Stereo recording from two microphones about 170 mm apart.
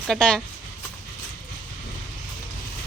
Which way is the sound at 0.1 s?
5° left (ahead or behind).